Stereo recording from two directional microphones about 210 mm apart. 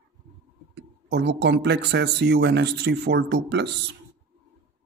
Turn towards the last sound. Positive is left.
turn(degrees=-55)  # may be behind; listen again after turning